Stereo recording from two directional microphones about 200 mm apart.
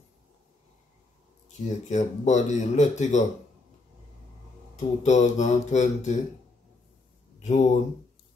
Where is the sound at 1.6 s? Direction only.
35° left (ahead or behind).